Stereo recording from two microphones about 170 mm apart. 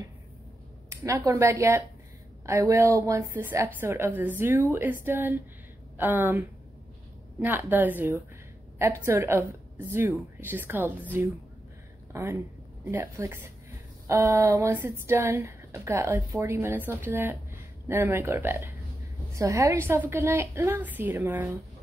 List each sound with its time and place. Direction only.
0.8 s speech: 15° right (ahead or behind)
12.1 s speech: 15° right (ahead or behind)